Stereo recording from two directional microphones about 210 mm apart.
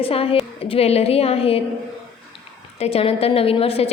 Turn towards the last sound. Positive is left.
turn(degrees=30)  # may be behind; listen again after turning